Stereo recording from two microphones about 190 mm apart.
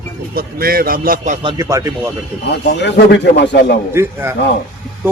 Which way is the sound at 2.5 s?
65° left (ahead or behind).